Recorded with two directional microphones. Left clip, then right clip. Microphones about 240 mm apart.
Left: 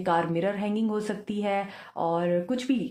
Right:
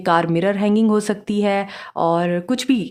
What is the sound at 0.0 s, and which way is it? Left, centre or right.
Speech, right.